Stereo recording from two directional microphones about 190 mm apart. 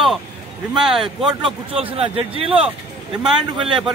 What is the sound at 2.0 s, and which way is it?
Speech, 30° right (ahead or behind).